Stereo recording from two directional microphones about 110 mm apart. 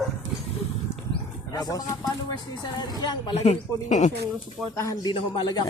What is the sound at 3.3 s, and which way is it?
Speech, 85° left.